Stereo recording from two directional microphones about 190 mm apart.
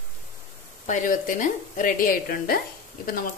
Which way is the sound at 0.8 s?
40° left (ahead or behind).